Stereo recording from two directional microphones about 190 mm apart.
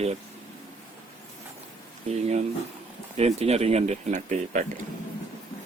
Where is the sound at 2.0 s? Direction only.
35° right (ahead or behind).